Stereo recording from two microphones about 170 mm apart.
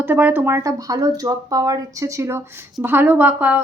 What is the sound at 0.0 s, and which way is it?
Speech, 10° right (ahead or behind).